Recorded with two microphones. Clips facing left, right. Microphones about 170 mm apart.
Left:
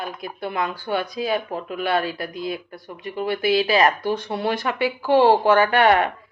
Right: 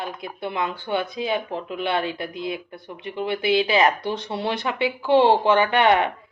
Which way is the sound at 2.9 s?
40° left (ahead or behind).